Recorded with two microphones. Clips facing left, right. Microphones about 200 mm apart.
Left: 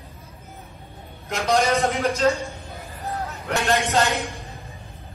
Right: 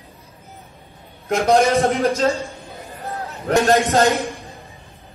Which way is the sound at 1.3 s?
50° right (ahead or behind).